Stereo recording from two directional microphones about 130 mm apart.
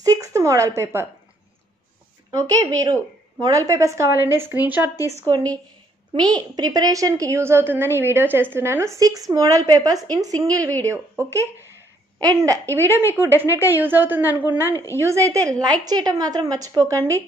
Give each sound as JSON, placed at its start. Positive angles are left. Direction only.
{"t": 0.0, "sound": "a sound", "side_deg": -25}
{"t": 2.3, "sound": "a woman's voice", "side_deg": -25}
{"t": 5.3, "sound": "a woman's voice", "side_deg": -30}
{"t": 14.7, "sound": "a woman's voice", "side_deg": 20}
{"t": 15.0, "sound": "a woman's voice", "side_deg": -25}